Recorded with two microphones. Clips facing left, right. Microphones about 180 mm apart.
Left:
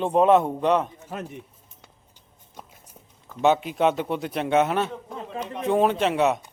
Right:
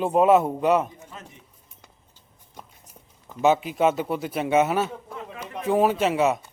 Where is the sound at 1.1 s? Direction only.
60° left (ahead or behind).